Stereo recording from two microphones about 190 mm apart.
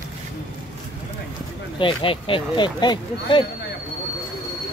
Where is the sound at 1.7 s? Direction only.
25° left (ahead or behind).